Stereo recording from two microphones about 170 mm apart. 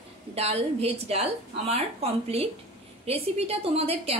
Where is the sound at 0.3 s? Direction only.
35° right (ahead or behind).